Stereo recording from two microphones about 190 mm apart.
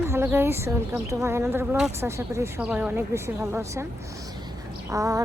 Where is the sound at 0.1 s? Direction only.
10° right (ahead or behind).